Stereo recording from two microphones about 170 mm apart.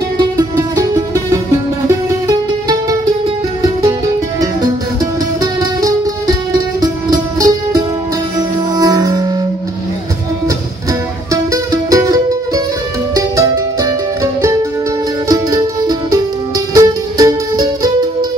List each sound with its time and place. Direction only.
0.2 s music: 25° right (ahead or behind)
5.4 s music: 20° right (ahead or behind)
11.5 s music: 20° right (ahead or behind)